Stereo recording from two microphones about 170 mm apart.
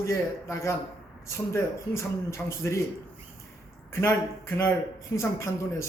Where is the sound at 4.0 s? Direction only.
15° left (ahead or behind).